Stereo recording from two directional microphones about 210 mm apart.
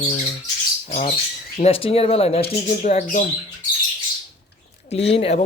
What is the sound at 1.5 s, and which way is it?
Speech, 30° left (ahead or behind).